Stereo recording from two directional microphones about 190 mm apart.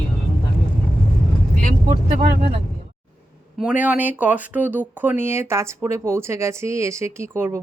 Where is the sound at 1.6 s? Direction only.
40° right (ahead or behind).